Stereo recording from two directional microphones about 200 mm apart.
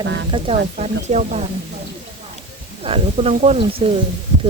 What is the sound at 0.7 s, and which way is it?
Speech, 35° right (ahead or behind).